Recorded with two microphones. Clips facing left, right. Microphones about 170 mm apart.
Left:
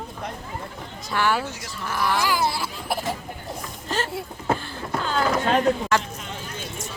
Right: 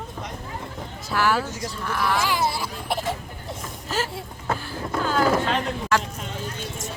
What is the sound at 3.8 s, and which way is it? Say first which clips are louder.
Vehicle: even; 5° right (ahead or behind).